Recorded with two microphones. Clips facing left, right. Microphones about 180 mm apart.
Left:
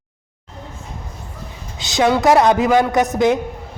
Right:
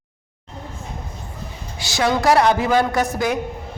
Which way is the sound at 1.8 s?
20° left (ahead or behind).